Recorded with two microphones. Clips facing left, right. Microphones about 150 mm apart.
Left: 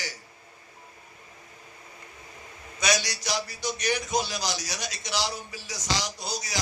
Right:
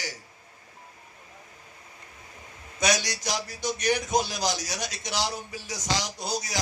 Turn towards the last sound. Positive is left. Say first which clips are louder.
# right 2 dB
turn(degrees=-50)  # may be behind; listen again after turning